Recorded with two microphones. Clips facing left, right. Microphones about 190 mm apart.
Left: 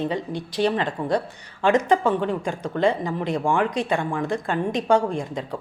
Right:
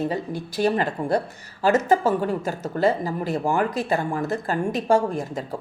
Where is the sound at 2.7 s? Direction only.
40° right (ahead or behind).